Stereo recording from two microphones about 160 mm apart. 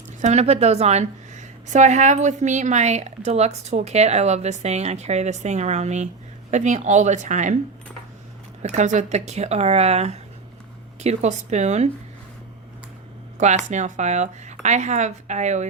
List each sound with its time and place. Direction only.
0.2 s a woman's voice: 45° right (ahead or behind)
8.6 s a woman's voice: 50° right (ahead or behind)
13.7 s a woman's voice: 50° right (ahead or behind)